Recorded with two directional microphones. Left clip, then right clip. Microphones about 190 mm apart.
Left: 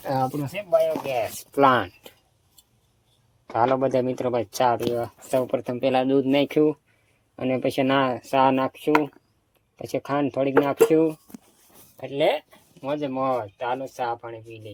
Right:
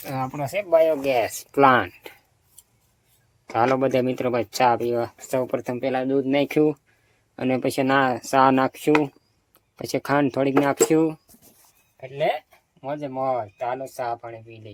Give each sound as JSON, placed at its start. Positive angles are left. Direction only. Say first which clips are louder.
{"t": 0.7, "sound": "speech", "louder": "right 3 dB", "side_deg": -65}
{"t": 1.5, "sound": "speech", "louder": "right 2 dB", "side_deg": -10}
{"t": 3.5, "sound": "speech", "louder": "right 1 dB", "side_deg": -20}
{"t": 5.3, "sound": "speech", "louder": "left 2 dB", "side_deg": 0}
{"t": 5.8, "sound": "speech", "louder": "left 3 dB", "side_deg": 15}
{"t": 6.5, "sound": "speech", "louder": "even", "side_deg": -15}
{"t": 8.1, "sound": "speech", "louder": "right 2 dB", "side_deg": -20}
{"t": 8.7, "sound": "speech", "louder": "right 1 dB", "side_deg": -35}
{"t": 11.9, "sound": "speech", "louder": "left 2 dB", "side_deg": 45}
{"t": 12.8, "sound": "speech", "louder": "left 1 dB", "side_deg": 15}